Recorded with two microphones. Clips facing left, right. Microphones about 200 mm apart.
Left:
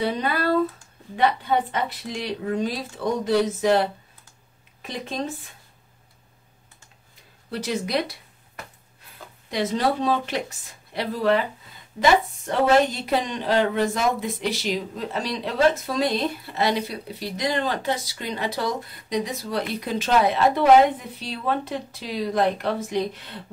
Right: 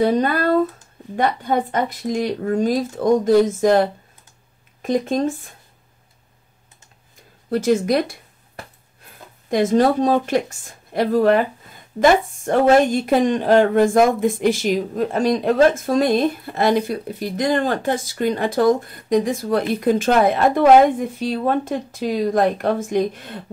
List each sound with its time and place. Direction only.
0.0 s speech: 45° right (ahead or behind)
7.4 s speech: 45° right (ahead or behind)
9.5 s speech: 50° right (ahead or behind)